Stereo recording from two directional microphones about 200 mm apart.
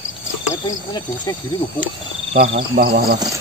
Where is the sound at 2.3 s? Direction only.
30° right (ahead or behind).